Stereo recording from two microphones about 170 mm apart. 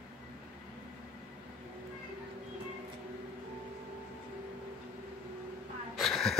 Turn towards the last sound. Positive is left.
turn(degrees=0)  # may be behind; listen again after turning